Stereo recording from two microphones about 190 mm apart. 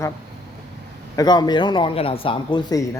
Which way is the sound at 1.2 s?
20° left (ahead or behind).